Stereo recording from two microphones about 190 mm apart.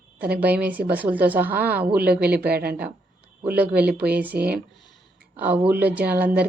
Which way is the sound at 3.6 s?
10° right (ahead or behind).